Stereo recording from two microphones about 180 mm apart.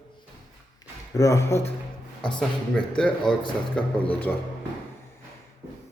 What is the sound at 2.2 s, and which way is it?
A man's voice, 5° left (ahead or behind).